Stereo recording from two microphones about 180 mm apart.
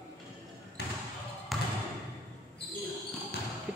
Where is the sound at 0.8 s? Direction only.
65° left (ahead or behind).